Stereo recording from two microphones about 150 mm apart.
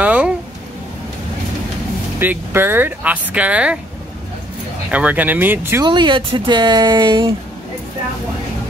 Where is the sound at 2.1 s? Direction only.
15° right (ahead or behind).